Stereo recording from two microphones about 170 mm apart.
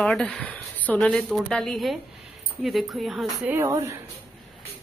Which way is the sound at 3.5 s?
15° right (ahead or behind).